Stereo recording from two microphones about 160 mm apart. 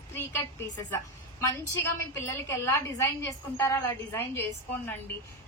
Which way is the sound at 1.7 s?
15° left (ahead or behind).